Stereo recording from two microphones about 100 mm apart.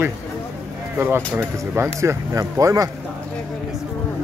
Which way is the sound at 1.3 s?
25° right (ahead or behind).